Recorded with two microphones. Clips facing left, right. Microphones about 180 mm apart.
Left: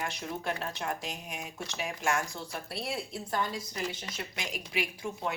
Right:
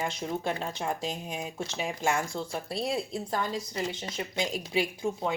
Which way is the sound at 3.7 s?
20° right (ahead or behind).